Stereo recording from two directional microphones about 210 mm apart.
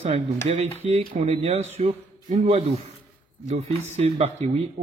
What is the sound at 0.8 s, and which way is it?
A man's voice, 30° right (ahead or behind).